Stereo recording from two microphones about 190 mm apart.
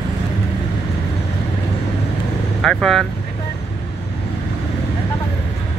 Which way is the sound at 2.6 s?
Centre (ahead or behind).